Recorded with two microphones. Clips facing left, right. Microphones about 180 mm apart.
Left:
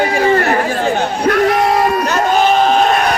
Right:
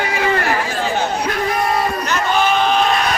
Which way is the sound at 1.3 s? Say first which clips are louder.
Left 9 dB; 80° left.